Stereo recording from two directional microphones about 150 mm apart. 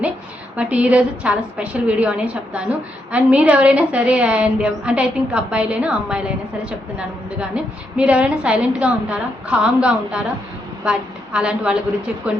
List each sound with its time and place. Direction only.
0.5 s a woman's voice: 10° right (ahead or behind)